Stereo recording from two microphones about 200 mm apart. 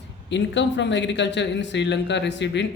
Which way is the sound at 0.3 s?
60° left (ahead or behind).